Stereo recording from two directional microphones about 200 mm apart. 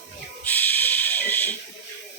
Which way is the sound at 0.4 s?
10° left (ahead or behind).